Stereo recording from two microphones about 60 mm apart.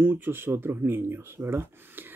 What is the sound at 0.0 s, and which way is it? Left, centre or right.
Speech, right.